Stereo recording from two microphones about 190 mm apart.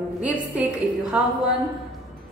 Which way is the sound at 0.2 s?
5° right (ahead or behind).